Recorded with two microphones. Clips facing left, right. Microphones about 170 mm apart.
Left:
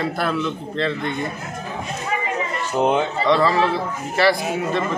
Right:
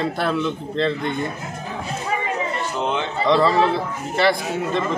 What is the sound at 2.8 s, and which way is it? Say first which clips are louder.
Speech: left 7 dB; 40° left (ahead or behind).